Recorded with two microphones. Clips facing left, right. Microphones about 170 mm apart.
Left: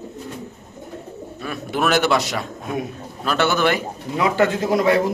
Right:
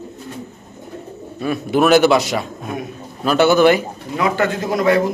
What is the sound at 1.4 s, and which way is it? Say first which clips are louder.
A man's voice: right 7 dB; 10° right (ahead or behind).